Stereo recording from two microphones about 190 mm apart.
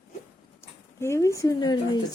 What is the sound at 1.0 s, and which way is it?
Speech, 15° left (ahead or behind).